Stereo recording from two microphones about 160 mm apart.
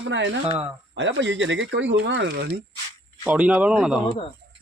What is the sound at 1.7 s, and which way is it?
Speech, 90° right.